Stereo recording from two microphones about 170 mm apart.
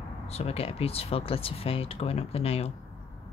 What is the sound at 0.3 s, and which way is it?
Speech, 35° left (ahead or behind).